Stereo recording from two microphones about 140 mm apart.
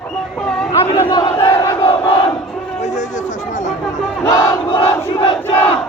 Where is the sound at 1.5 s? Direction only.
20° left (ahead or behind).